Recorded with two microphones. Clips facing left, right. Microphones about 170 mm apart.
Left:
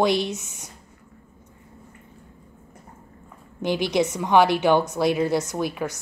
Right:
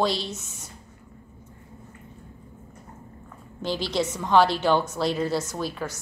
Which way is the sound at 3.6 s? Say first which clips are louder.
Left 4 dB; 15° left (ahead or behind).